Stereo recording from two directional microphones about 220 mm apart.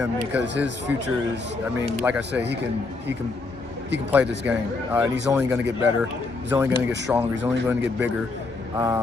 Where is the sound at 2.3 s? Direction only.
50° right (ahead or behind).